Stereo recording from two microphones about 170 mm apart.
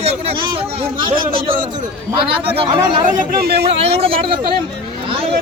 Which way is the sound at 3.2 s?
65° right (ahead or behind).